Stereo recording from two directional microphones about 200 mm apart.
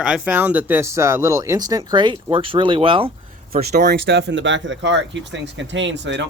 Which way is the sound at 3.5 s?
50° right (ahead or behind).